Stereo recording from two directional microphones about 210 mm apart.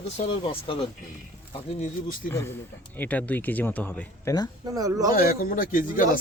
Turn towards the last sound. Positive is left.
turn(degrees=40)  # may be behind; listen again after turning